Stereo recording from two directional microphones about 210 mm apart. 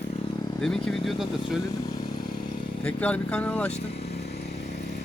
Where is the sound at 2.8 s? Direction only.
5° left (ahead or behind).